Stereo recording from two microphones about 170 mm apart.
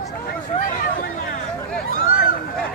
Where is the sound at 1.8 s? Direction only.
55° left (ahead or behind).